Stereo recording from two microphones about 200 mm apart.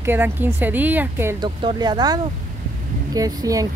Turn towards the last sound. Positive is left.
turn(degrees=-15)  # may be behind; listen again after turning